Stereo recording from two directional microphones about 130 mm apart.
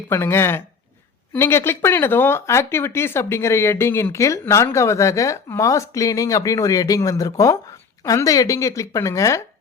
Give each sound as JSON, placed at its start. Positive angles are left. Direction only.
{"t": 0.1, "sound": "speech", "side_deg": 20}